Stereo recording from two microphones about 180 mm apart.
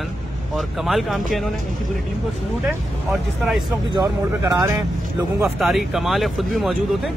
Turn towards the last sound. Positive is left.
turn(degrees=0)  # may be behind; listen again after turning